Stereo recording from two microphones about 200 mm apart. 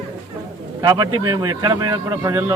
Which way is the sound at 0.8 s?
20° right (ahead or behind).